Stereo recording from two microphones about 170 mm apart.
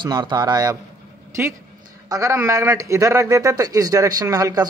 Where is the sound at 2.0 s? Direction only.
20° right (ahead or behind).